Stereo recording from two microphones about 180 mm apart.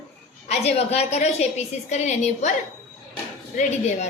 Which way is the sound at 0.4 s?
35° left (ahead or behind).